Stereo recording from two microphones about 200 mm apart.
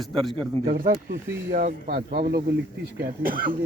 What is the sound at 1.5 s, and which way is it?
Speech, 45° right (ahead or behind).